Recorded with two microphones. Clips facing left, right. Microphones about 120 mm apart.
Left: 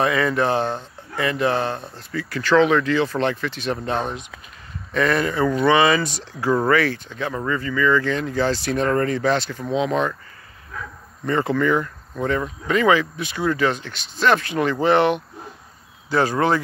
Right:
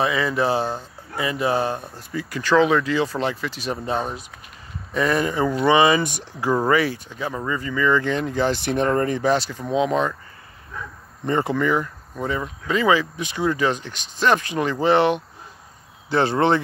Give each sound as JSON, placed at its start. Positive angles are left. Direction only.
{"t": 0.0, "sound": "speech", "side_deg": -5}
{"t": 11.2, "sound": "speech", "side_deg": -15}
{"t": 16.1, "sound": "speech", "side_deg": -25}